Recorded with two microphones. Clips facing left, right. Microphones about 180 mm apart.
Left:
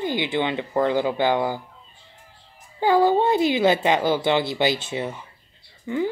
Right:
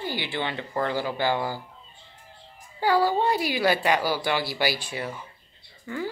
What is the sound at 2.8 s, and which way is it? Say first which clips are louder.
Speech: left 4 dB; 20° left (ahead or behind).